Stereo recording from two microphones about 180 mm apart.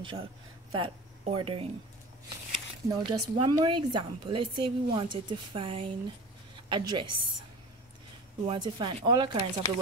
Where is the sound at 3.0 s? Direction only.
25° right (ahead or behind).